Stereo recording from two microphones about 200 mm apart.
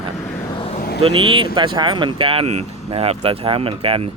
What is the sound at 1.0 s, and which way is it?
Speech, 25° right (ahead or behind).